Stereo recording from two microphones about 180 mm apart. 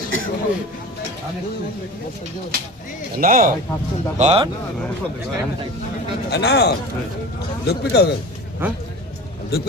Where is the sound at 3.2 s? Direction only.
45° right (ahead or behind).